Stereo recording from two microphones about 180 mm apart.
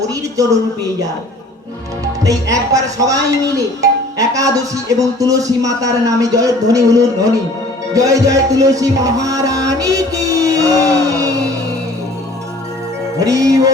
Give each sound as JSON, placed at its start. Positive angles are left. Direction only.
{"t": 0.0, "sound": "a man's voice", "side_deg": -20}
{"t": 2.2, "sound": "music", "side_deg": -20}
{"t": 13.1, "sound": "music", "side_deg": -20}